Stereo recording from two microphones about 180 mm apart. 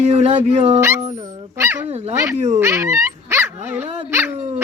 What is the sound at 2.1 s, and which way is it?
Speech, 15° right (ahead or behind).